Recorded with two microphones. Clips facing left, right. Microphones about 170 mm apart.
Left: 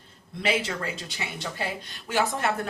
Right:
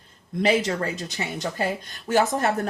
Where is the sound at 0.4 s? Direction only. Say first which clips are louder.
Right 5 dB; 40° right (ahead or behind).